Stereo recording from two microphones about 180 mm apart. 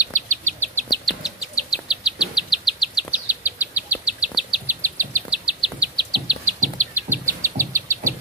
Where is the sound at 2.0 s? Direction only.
5° right (ahead or behind).